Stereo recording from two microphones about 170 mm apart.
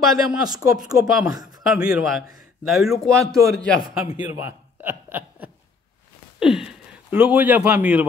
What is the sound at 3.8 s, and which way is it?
Speech, 30° left (ahead or behind).